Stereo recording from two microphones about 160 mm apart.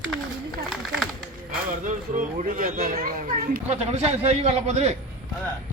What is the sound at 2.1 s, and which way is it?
Speech, 55° right (ahead or behind).